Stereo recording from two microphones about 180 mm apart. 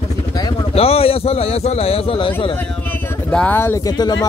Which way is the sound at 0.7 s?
35° left (ahead or behind).